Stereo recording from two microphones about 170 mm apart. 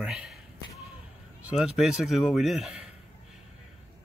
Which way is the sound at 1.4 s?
5° right (ahead or behind).